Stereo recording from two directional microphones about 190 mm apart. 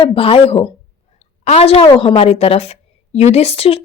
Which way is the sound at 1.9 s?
30° left (ahead or behind).